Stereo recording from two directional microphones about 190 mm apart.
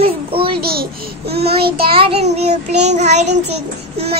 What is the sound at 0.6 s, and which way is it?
Speech, 55° right (ahead or behind).